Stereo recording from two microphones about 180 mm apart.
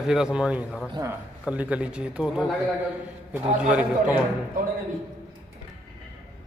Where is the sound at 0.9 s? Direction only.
20° right (ahead or behind).